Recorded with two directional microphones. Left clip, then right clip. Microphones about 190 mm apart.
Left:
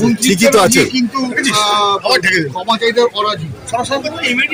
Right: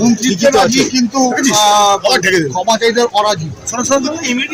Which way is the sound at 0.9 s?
30° right (ahead or behind).